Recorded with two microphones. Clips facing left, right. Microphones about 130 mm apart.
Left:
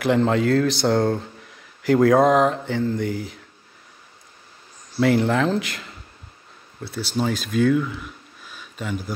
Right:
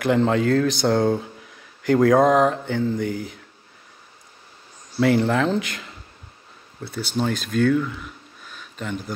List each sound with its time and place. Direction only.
0.0 s speech: centre (ahead or behind)
4.9 s speech: centre (ahead or behind)